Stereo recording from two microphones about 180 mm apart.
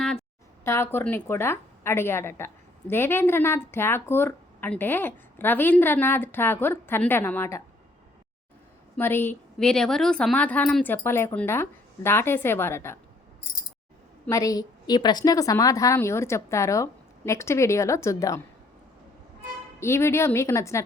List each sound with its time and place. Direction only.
0.6 s a woman's voice: 15° left (ahead or behind)
9.0 s a woman's voice: 10° left (ahead or behind)
14.3 s a woman's voice: 20° left (ahead or behind)
19.8 s a woman's voice: 15° left (ahead or behind)